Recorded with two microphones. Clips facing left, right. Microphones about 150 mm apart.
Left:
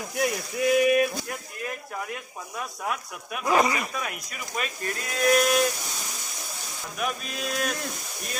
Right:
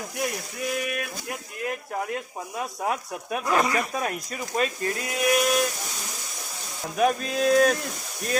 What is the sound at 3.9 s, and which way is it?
Speech, 35° right (ahead or behind).